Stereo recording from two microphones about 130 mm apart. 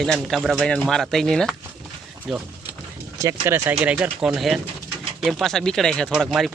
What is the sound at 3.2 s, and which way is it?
Speech, 20° right (ahead or behind).